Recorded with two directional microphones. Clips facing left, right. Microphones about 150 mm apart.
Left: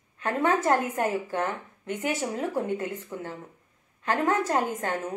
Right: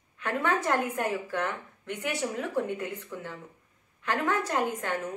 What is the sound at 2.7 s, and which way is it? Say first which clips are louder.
Speech: left 4 dB; 40° left (ahead or behind).